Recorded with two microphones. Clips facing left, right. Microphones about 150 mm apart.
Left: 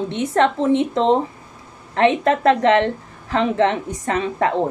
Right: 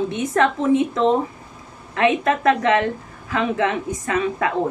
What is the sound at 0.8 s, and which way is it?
A woman's voice, 30° left (ahead or behind).